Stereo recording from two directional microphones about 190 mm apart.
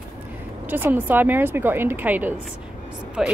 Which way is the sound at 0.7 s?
10° right (ahead or behind).